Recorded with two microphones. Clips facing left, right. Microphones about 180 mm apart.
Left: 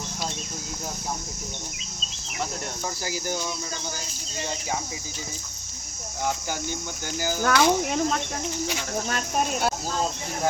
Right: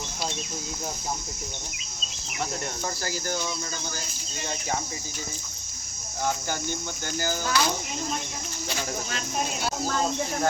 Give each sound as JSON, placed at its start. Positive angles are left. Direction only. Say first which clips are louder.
{"t": 3.0, "sound": "cricket", "louder": "left 2 dB", "side_deg": 15}
{"t": 6.2, "sound": "cricket", "louder": "even", "side_deg": 10}
{"t": 7.4, "sound": "speech", "louder": "left 10 dB", "side_deg": 70}
{"t": 9.0, "sound": "speech", "louder": "left 4 dB", "side_deg": 50}